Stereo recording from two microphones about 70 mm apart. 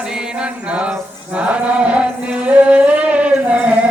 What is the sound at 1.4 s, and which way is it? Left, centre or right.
Chant, centre.